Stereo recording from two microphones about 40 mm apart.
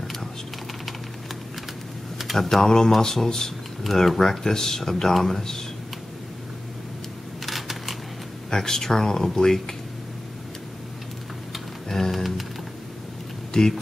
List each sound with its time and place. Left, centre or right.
2.3 s speech: centre
7.4 s typewriter: centre
8.5 s speech: centre
11.9 s music: centre
13.5 s speech: centre